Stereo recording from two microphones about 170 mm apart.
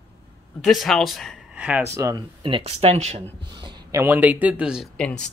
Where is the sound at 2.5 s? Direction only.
35° right (ahead or behind).